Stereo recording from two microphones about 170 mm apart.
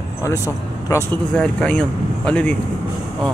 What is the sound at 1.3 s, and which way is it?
Speech, 5° left (ahead or behind).